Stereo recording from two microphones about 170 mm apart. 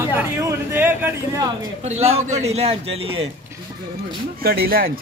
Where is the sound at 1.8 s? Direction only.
40° right (ahead or behind).